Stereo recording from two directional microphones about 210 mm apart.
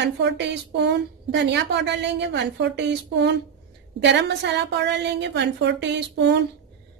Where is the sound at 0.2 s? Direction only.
55° right (ahead or behind).